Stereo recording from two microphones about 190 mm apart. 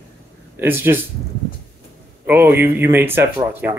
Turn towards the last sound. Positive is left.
turn(degrees=-10)  # may be behind; listen again after turning